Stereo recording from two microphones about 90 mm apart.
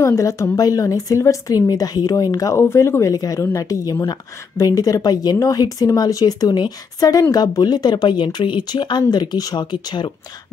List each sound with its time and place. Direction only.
0.0 s a woman's voice: 35° left (ahead or behind); by 10.1 s 55° left (ahead or behind)